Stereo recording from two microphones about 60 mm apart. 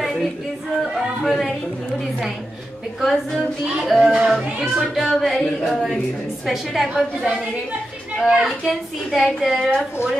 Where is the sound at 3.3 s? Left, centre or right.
Centre.